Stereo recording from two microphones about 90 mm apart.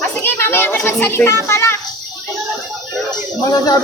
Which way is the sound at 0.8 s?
25° left (ahead or behind).